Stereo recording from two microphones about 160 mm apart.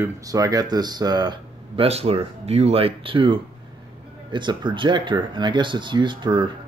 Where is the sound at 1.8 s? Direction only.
40° right (ahead or behind).